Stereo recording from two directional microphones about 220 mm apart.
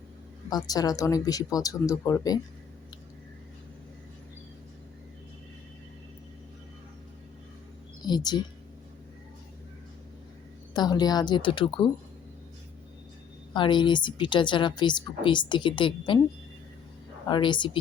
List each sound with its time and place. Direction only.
0.5 s speech: 15° left (ahead or behind)
8.0 s a woman's voice: 20° left (ahead or behind)
10.8 s a woman's voice: 20° left (ahead or behind)
13.5 s a woman's voice: 20° left (ahead or behind)
17.2 s a woman's voice: 20° left (ahead or behind)